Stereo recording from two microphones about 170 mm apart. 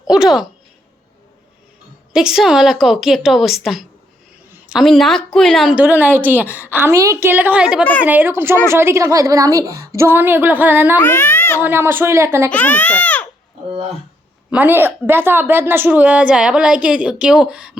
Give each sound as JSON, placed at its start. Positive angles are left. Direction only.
{"t": 0.1, "sound": "a woman's voice", "side_deg": 0}
{"t": 2.1, "sound": "a woman's voice", "side_deg": -5}
{"t": 5.8, "sound": "a woman's voice", "side_deg": -10}
{"t": 10.9, "sound": "a child's voice", "side_deg": 15}
{"t": 11.6, "sound": "a woman's voice", "side_deg": -15}
{"t": 12.5, "sound": "a child's voice", "side_deg": 10}
{"t": 14.5, "sound": "a woman's voice", "side_deg": -10}